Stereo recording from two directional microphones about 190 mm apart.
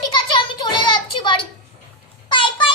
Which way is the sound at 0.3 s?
25° left (ahead or behind).